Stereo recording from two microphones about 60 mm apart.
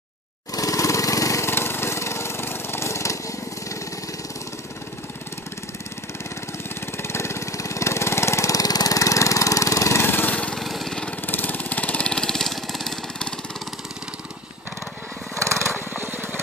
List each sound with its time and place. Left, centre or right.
0.6 s lawn mower: left
1.4 s a sound: left
7.0 s lawn mower: left
10.0 s lawn mower: left
10.6 s lawn mower: centre
11.2 s lawn mower: left; by 13.3 s centre
15.9 s vehicle: right